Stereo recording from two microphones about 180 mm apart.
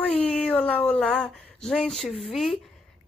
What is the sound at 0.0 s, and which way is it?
Speech, 5° left (ahead or behind).